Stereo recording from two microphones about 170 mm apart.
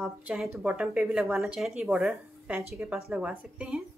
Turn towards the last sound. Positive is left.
turn(degrees=-5)  # may be behind; listen again after turning